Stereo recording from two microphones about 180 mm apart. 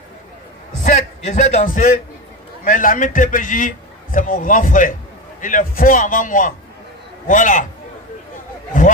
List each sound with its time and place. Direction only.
1.2 s a man's voice: 40° left (ahead or behind)